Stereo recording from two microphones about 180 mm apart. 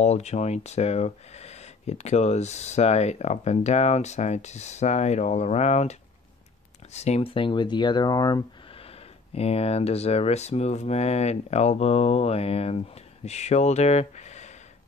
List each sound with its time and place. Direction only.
0.0 s speech: 40° left (ahead or behind); by 8.8 s 20° left (ahead or behind)
9.3 s speech: 35° left (ahead or behind)